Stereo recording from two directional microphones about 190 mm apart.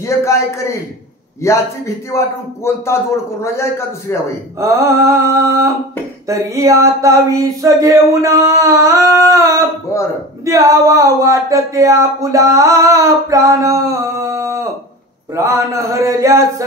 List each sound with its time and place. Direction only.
0.0 s speech: 15° left (ahead or behind)
4.6 s speech: 15° right (ahead or behind)
9.9 s speech: 15° left (ahead or behind)
10.4 s speech: 15° right (ahead or behind)